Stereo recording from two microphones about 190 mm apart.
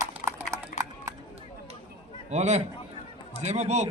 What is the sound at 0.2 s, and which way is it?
Clip-clop, 40° left (ahead or behind).